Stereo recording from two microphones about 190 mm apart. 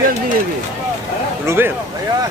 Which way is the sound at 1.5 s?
10° right (ahead or behind).